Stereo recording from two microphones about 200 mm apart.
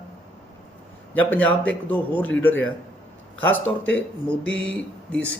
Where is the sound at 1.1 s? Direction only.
10° left (ahead or behind).